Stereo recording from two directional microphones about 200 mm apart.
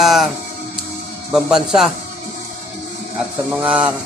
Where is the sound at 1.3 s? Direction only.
Centre (ahead or behind).